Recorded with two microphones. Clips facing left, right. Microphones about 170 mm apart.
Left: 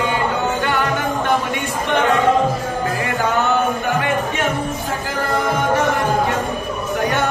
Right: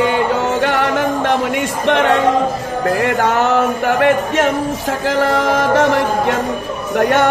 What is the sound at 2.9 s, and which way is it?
Music, 80° right.